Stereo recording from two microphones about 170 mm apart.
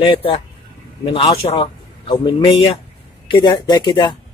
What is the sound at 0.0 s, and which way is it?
Speech, 30° left (ahead or behind).